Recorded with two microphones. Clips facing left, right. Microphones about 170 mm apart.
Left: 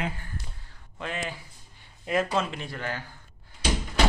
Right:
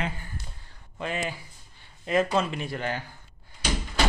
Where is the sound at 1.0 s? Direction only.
5° right (ahead or behind).